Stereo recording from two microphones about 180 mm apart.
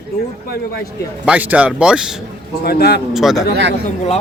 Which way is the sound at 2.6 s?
60° left (ahead or behind).